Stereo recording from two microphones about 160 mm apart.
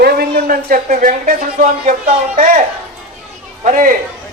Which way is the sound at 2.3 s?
45° right (ahead or behind).